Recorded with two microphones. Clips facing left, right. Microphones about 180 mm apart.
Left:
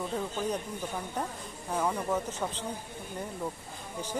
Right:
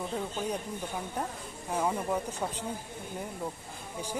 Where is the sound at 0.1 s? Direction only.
10° right (ahead or behind).